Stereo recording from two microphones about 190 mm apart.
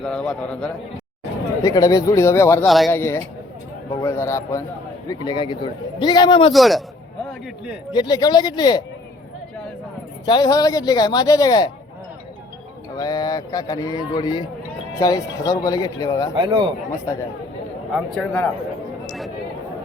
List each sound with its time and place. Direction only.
0.0 s a man's voice: 5° left (ahead or behind)
1.6 s speech: 20° left (ahead or behind)
2.6 s a man's voice: centre (ahead or behind)
2.9 s a man's voice: 10° left (ahead or behind)
6.5 s a man's voice: centre (ahead or behind)
7.9 s a man's voice: 20° left (ahead or behind)
10.2 s a man's voice: 20° left (ahead or behind)
13.0 s a man's voice: 20° left (ahead or behind)
16.3 s a man's voice: 25° right (ahead or behind)
18.1 s speech: 5° left (ahead or behind)
19.0 s a sound: centre (ahead or behind)